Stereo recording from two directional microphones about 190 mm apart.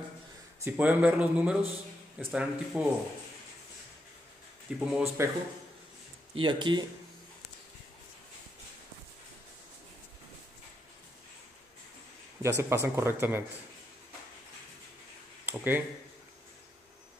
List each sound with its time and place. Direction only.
0.7 s speech: 5° right (ahead or behind)
4.7 s speech: 5° right (ahead or behind)
6.4 s speech: 25° right (ahead or behind)
12.4 s speech: 15° right (ahead or behind)
15.4 s speech: 10° right (ahead or behind)